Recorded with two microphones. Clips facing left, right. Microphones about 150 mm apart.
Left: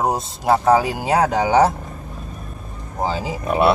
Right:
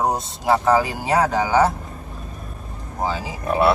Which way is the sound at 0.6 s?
15° left (ahead or behind).